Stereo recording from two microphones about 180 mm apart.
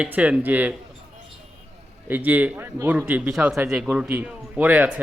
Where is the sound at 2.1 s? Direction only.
10° right (ahead or behind).